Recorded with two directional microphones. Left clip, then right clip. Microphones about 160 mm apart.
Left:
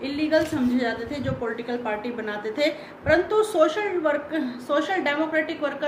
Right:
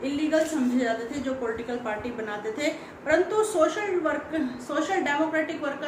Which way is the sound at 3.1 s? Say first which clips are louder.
Left 3 dB; 65° left (ahead or behind).